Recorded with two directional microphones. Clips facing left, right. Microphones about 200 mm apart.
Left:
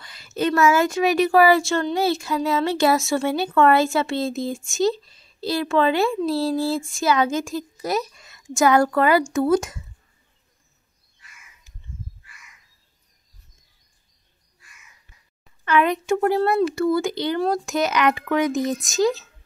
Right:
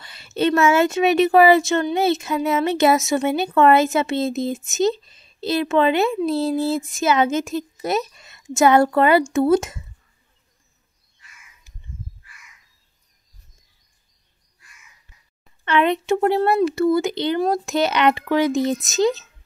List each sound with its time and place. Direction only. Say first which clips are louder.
0.0 s speech: right 3 dB; 25° right (ahead or behind)
15.6 s speech: right 1 dB; 25° right (ahead or behind)